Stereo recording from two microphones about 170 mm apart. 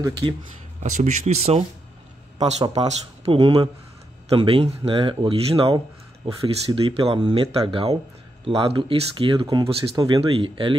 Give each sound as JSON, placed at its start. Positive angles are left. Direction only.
{"t": 0.8, "sound": "speech", "side_deg": -45}
{"t": 2.3, "sound": "speech", "side_deg": -25}